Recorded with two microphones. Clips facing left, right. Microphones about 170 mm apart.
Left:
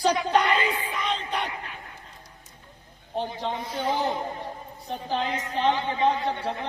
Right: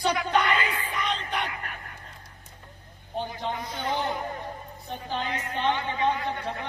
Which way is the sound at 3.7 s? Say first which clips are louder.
Left 4 dB; 10° left (ahead or behind).